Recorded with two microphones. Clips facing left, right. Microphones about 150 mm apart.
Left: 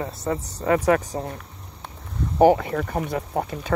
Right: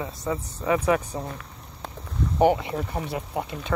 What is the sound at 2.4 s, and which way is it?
Speech, 45° left (ahead or behind).